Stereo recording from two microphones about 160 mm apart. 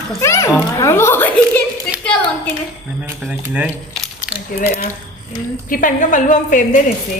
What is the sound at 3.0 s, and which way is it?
Speech, 5° right (ahead or behind).